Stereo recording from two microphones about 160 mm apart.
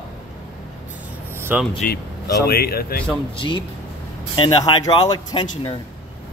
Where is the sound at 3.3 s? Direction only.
30° left (ahead or behind).